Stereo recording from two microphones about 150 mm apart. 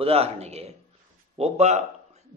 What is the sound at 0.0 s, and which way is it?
A man's voice, 40° right (ahead or behind).